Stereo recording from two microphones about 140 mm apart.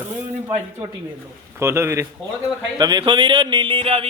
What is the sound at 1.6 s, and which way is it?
Speech, 20° right (ahead or behind).